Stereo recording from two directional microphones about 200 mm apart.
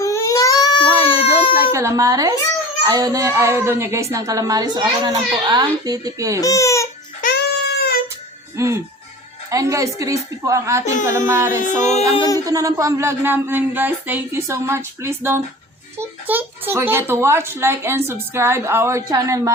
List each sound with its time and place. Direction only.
0.0 s baby cry: 15° left (ahead or behind)
1.7 s a child's voice: 15° right (ahead or behind)
6.4 s speech: 15° left (ahead or behind)
7.2 s music: 45° left (ahead or behind)
8.5 s a child's voice: 15° right (ahead or behind)
11.8 s music: 35° left (ahead or behind)
12.1 s a sound: 20° left (ahead or behind)
12.5 s a child's voice: 15° right (ahead or behind)